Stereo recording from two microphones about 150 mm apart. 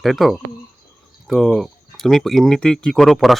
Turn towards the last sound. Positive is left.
turn(degrees=0)  # may be behind; listen again after turning